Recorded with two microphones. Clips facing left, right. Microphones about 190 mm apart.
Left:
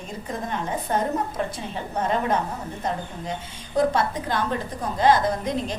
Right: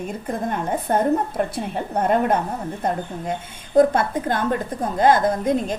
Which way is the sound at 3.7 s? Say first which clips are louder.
Right 6 dB; 50° right (ahead or behind).